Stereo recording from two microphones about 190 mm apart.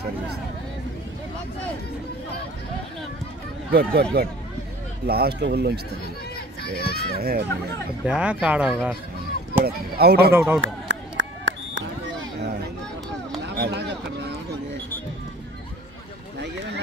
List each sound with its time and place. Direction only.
3.7 s speech: 55° right (ahead or behind)
6.3 s children playing: 55° left (ahead or behind)
7.2 s speech: 55° right (ahead or behind)
8.0 s speech: 5° right (ahead or behind)
9.7 s speech: 55° right (ahead or behind)
10.3 s speech: 10° right (ahead or behind)
10.6 s a sound: 75° right (ahead or behind)
13.6 s a sound: 60° right (ahead or behind)
16.3 s a sound: 65° right (ahead or behind)